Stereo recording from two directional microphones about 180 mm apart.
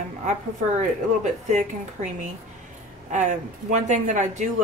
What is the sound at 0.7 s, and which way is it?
Speech, 40° right (ahead or behind).